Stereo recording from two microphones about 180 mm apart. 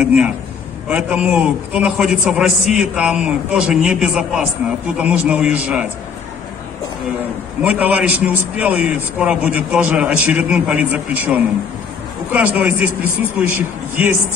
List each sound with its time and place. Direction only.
0.0 s a man's voice: 5° right (ahead or behind)
7.6 s a man's voice: 10° right (ahead or behind)